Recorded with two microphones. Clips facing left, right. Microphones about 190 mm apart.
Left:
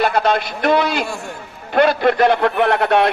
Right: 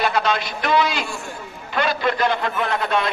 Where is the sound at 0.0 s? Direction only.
55° left (ahead or behind).